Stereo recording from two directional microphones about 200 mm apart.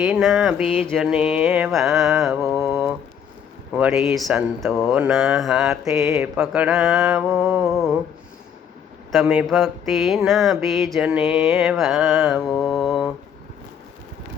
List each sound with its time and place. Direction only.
0.0 s mantra: centre (ahead or behind)
5.8 s mantra: 15° right (ahead or behind)
9.1 s mantra: 5° right (ahead or behind)